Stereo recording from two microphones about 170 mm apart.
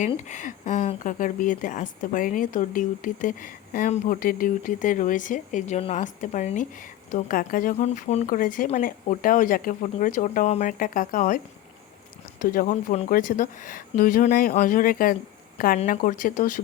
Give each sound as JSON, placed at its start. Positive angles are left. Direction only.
{"t": 0.3, "sound": "a woman's voice", "side_deg": 45}
{"t": 12.4, "sound": "a woman's voice", "side_deg": 55}